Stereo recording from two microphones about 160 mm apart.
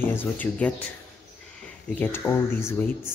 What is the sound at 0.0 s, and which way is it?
Speech, 15° left (ahead or behind).